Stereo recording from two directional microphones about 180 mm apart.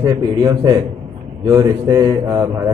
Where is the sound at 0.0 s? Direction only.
20° right (ahead or behind).